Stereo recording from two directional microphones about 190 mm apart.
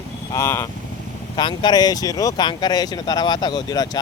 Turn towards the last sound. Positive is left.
turn(degrees=20)  # may be behind; listen again after turning